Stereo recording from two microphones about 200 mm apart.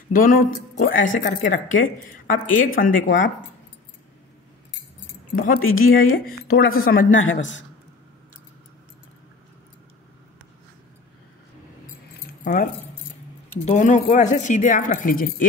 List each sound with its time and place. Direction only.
0.1 s speech: 45° left (ahead or behind)
5.3 s speech: 45° left (ahead or behind)
7.1 s a woman's voice: 75° left (ahead or behind)
12.4 s speech: 40° left (ahead or behind)
13.7 s speech: 40° left (ahead or behind)